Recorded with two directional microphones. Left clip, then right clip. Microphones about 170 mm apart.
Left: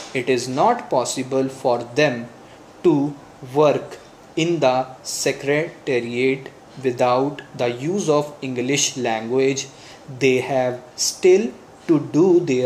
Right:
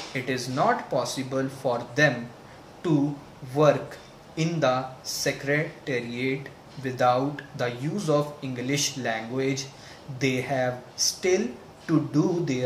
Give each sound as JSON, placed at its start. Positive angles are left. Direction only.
{"t": 0.1, "sound": "speech", "side_deg": 30}
{"t": 4.4, "sound": "speech", "side_deg": 30}